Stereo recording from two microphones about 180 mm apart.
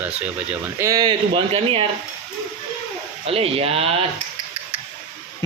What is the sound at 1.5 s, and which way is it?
Speech, 30° right (ahead or behind).